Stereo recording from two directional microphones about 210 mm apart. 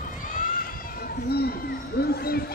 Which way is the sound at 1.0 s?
45° left (ahead or behind).